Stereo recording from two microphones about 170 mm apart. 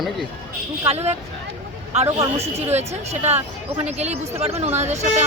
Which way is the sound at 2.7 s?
40° right (ahead or behind).